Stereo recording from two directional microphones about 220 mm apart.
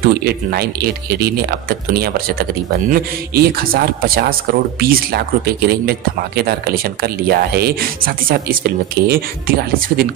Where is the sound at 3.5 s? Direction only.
45° right (ahead or behind).